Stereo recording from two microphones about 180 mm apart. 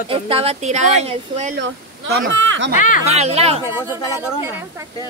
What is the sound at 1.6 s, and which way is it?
Speech, 85° right.